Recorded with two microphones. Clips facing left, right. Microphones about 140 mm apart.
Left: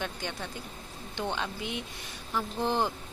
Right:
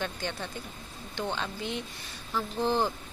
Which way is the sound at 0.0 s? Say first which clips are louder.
Right 2 dB; 10° left (ahead or behind).